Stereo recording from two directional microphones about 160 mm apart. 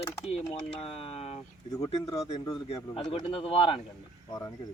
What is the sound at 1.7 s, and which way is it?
Speech, 25° left (ahead or behind).